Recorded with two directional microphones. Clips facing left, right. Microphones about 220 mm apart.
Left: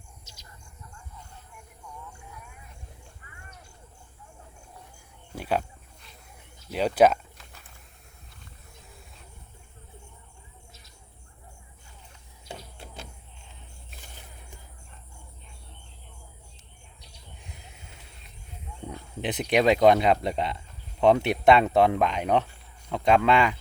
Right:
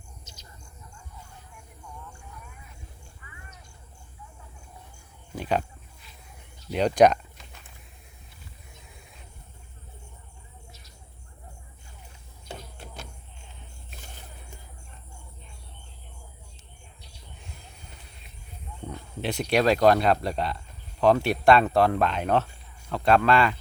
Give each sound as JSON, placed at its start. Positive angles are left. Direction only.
{"t": 3.2, "sound": "vehicle", "side_deg": 45}
{"t": 5.3, "sound": "speech", "side_deg": 5}
{"t": 6.7, "sound": "a sound", "side_deg": 5}
{"t": 18.9, "sound": "speech", "side_deg": 20}